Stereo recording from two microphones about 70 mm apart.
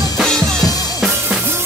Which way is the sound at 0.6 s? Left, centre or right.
Left.